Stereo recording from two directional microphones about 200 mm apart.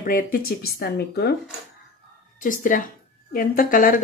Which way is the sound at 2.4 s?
40° left (ahead or behind).